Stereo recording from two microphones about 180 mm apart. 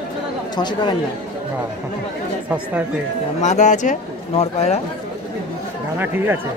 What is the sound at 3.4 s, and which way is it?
Speech, 40° left (ahead or behind).